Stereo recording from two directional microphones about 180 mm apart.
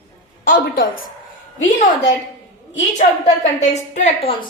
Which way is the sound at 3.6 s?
40° left (ahead or behind).